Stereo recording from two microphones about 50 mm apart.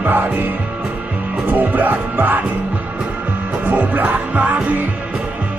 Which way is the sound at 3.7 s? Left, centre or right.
Right.